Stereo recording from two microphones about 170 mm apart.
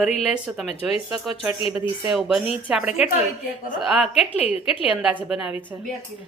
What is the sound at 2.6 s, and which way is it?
Speech, 5° right (ahead or behind).